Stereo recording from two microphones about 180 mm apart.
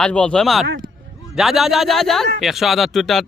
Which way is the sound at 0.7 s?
50° right (ahead or behind).